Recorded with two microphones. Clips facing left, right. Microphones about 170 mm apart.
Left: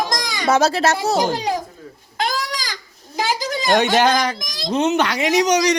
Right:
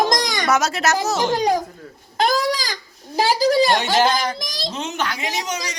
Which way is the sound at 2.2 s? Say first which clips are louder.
Right 5 dB; 35° right (ahead or behind).